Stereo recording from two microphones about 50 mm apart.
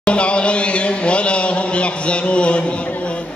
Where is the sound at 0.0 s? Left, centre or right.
Left.